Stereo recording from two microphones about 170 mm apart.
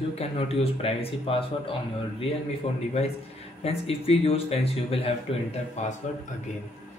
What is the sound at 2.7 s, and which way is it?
Speech, 35° left (ahead or behind).